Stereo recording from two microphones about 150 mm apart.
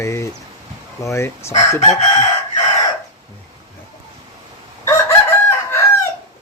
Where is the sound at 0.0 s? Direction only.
20° left (ahead or behind).